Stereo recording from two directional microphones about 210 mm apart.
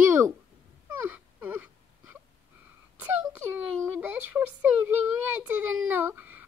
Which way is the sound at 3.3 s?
10° right (ahead or behind).